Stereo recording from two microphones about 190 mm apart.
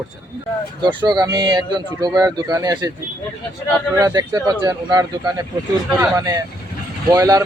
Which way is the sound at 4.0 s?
15° right (ahead or behind).